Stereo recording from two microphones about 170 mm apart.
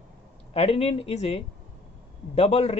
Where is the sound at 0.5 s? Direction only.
35° left (ahead or behind).